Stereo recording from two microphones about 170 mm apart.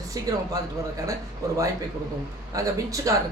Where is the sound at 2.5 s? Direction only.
20° right (ahead or behind).